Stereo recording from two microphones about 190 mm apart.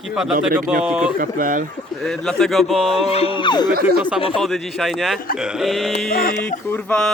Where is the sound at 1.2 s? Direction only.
45° right (ahead or behind).